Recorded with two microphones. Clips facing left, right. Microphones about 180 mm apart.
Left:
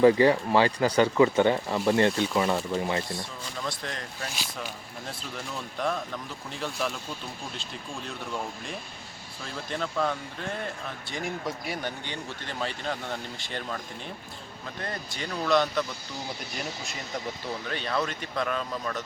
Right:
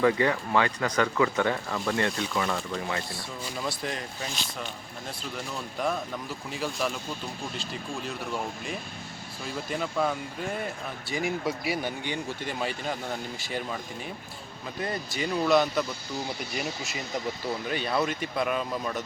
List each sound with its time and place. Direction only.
0.0 s speech: 30° left (ahead or behind)
3.6 s speech: 5° right (ahead or behind)
4.3 s speech: 5° left (ahead or behind)
17.7 s speech: 10° right (ahead or behind)